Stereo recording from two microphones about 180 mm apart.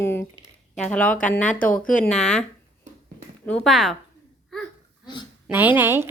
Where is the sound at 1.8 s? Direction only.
45° left (ahead or behind).